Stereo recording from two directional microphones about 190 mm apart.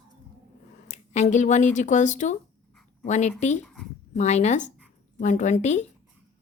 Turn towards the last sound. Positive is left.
turn(degrees=40)  # may be behind; listen again after turning